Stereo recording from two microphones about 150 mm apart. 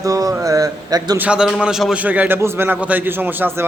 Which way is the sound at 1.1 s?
5° right (ahead or behind).